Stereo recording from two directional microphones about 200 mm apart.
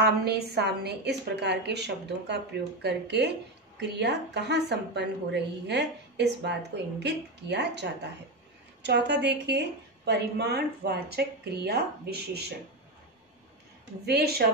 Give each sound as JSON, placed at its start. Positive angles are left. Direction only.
{"t": 0.0, "sound": "a woman's voice", "side_deg": -55}
{"t": 14.0, "sound": "speech", "side_deg": -50}